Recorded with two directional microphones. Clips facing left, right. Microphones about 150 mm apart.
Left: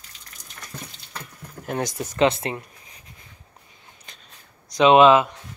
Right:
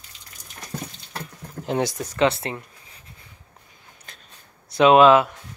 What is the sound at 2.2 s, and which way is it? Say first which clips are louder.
Speech: left 1 dB; 20° left (ahead or behind).